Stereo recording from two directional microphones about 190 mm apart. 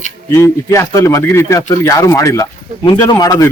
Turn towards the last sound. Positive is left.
turn(degrees=20)  # may be behind; listen again after turning